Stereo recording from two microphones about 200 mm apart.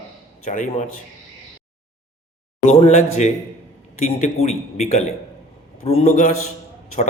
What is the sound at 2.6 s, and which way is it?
Speech, 30° left (ahead or behind).